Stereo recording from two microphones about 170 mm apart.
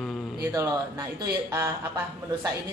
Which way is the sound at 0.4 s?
15° right (ahead or behind).